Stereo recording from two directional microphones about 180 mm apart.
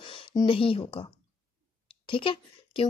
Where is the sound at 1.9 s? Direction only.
30° left (ahead or behind).